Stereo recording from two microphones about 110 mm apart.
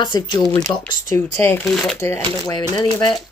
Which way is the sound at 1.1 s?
20° left (ahead or behind).